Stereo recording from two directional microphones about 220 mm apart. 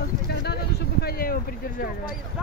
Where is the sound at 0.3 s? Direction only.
45° left (ahead or behind).